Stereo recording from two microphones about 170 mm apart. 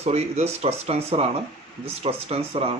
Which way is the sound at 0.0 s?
40° right (ahead or behind).